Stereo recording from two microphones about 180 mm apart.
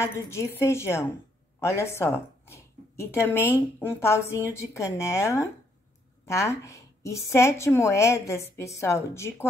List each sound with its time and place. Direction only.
0.0 s speech: 15° left (ahead or behind)